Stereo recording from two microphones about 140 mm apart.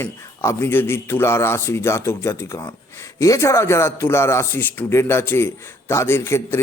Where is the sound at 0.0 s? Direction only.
15° left (ahead or behind).